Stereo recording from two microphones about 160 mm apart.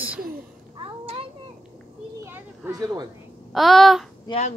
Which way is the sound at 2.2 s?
20° right (ahead or behind).